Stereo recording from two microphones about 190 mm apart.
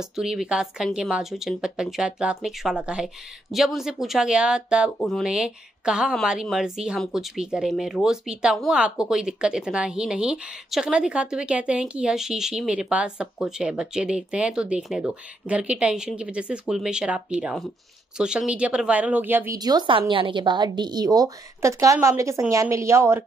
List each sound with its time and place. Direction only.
0.0 s a woman's voice: 5° right (ahead or behind)